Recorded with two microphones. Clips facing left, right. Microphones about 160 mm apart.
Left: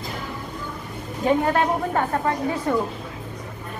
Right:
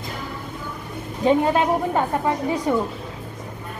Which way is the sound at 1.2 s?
20° right (ahead or behind).